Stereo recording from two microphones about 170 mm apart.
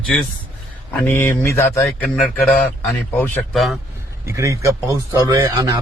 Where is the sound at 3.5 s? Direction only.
Centre (ahead or behind).